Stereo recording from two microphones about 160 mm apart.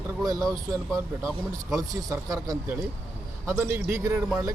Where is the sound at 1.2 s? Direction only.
20° right (ahead or behind).